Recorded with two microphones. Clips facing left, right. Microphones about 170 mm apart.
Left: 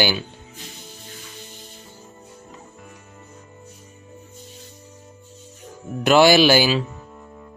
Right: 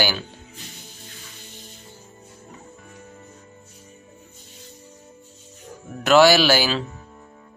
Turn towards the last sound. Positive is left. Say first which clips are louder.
# left 3 dB
turn(degrees=15)  # may be behind; listen again after turning